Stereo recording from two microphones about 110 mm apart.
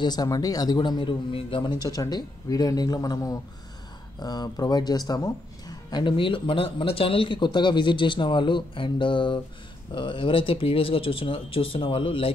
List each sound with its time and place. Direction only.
0.0 s a man's voice: 35° left (ahead or behind); by 12.3 s 55° left (ahead or behind)